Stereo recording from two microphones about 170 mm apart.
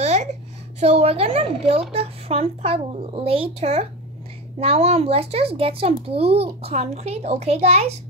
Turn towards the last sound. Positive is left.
turn(degrees=-35)  # may be behind; listen again after turning